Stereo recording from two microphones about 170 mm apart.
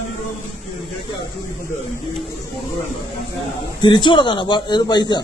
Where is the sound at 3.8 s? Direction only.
30° left (ahead or behind).